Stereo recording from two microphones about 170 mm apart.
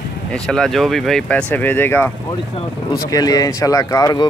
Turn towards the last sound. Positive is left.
turn(degrees=25)  # may be behind; listen again after turning